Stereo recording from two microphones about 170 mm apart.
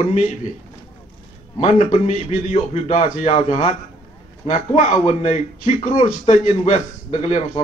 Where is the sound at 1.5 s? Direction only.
40° left (ahead or behind).